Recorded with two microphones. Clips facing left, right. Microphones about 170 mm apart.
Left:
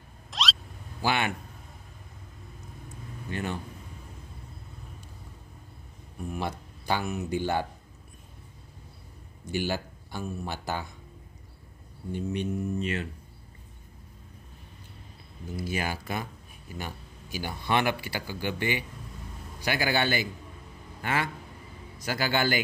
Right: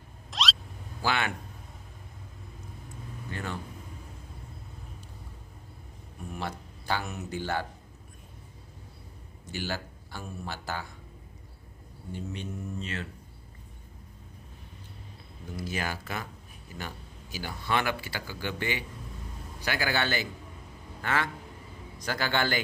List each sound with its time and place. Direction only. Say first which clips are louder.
0.3 s vehicle: even; centre (ahead or behind)
1.0 s speech: left 2 dB; 15° left (ahead or behind)
3.3 s speech: left 4 dB; 20° left (ahead or behind)
6.3 s speech: left 2 dB; 15° left (ahead or behind)
9.5 s speech: left 5 dB; 15° left (ahead or behind)
12.1 s speech: left 7 dB; 15° left (ahead or behind)
15.5 s a man's voice: left 2 dB; 10° left (ahead or behind)